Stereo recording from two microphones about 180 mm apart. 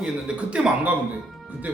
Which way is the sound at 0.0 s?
5° right (ahead or behind).